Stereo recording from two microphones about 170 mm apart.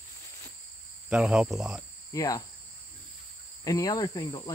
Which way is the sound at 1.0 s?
5° right (ahead or behind).